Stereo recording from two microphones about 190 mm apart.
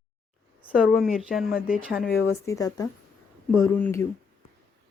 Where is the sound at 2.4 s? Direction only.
15° left (ahead or behind).